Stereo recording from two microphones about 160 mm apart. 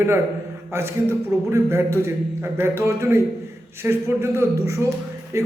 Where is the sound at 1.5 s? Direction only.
15° right (ahead or behind).